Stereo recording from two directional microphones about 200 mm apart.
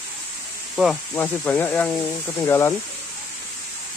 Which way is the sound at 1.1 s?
10° left (ahead or behind).